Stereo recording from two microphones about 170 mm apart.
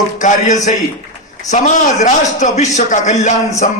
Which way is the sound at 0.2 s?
45° left (ahead or behind).